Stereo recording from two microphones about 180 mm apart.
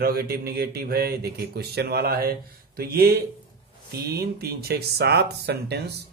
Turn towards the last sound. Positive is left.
turn(degrees=-65)  # may be behind; listen again after turning